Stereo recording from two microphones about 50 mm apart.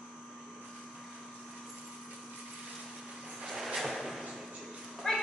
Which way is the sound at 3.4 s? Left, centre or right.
Centre.